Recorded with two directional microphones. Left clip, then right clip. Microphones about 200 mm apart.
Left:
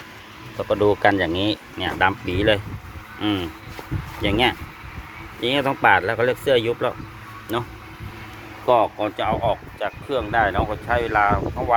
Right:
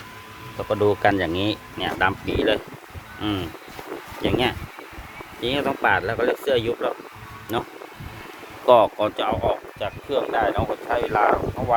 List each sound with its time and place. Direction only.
0.5 s speech: 10° right (ahead or behind); by 6.9 s 5° left (ahead or behind)
7.5 s speech: 10° right (ahead or behind)
8.6 s speech: 40° right (ahead or behind)
9.1 s speech: 25° right (ahead or behind)
9.5 s speech: centre (ahead or behind)